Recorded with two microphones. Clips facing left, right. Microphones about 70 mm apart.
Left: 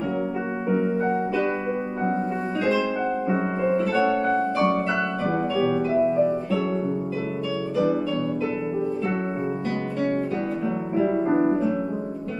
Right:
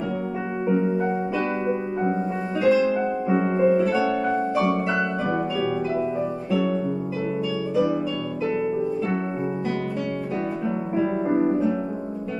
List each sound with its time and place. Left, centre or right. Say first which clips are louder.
3.5 s harp: right 3 dB; centre
11.3 s music: right 1 dB; left